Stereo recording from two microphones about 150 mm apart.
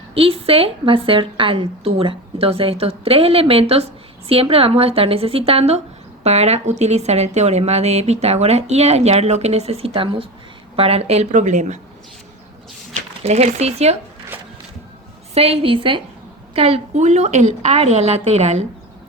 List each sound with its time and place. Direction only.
0.1 s a woman's voice: 40° right (ahead or behind)
13.2 s a woman's voice: 45° right (ahead or behind)
15.4 s a woman's voice: 40° right (ahead or behind)